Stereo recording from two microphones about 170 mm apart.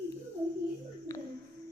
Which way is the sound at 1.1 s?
20° left (ahead or behind).